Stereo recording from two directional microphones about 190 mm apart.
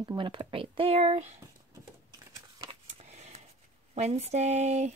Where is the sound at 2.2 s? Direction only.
20° right (ahead or behind).